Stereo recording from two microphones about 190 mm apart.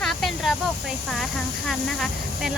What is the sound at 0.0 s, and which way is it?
Speech, centre (ahead or behind).